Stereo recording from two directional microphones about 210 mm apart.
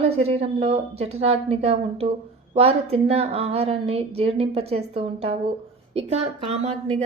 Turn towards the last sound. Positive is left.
turn(degrees=-30)  # may be behind; listen again after turning